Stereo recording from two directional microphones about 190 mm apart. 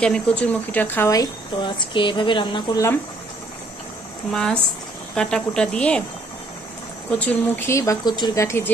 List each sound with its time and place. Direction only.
0.0 s speech: 5° left (ahead or behind); by 2.8 s 25° left (ahead or behind)
4.3 s speech: 5° left (ahead or behind)
7.1 s speech: 10° left (ahead or behind)